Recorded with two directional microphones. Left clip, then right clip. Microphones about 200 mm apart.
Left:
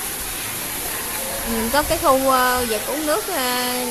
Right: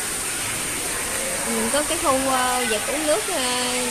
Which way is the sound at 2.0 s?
15° left (ahead or behind).